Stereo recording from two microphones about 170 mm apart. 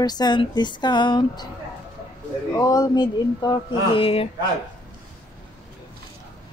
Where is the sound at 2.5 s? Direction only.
20° left (ahead or behind).